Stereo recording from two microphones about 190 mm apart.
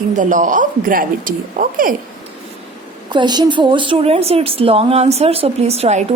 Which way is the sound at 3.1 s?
25° right (ahead or behind).